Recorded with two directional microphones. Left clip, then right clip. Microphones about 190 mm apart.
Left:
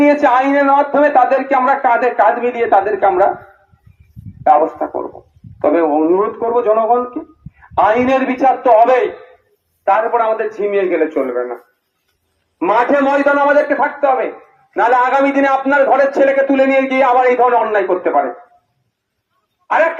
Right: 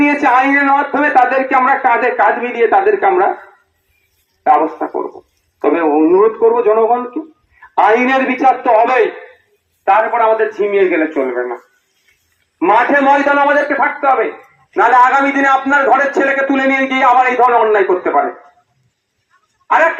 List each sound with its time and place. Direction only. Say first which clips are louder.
0.0 s a man's voice: even; 30° left (ahead or behind)
4.4 s speech: even; 35° left (ahead or behind)
12.5 s speech: right 2 dB; 35° left (ahead or behind)
19.6 s a sound: right 2 dB; 40° left (ahead or behind)